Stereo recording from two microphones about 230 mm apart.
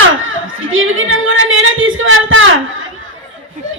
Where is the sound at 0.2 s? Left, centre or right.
Right.